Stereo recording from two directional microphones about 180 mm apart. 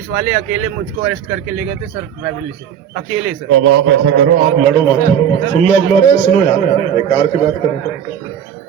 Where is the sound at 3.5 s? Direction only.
90° right.